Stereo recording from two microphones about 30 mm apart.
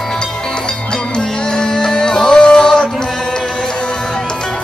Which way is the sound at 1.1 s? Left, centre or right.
Left.